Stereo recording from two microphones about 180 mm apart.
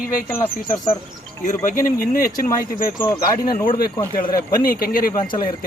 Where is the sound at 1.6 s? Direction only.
50° left (ahead or behind).